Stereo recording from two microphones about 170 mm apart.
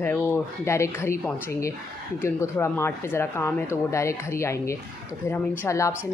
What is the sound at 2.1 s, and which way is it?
A man's voice, 15° left (ahead or behind).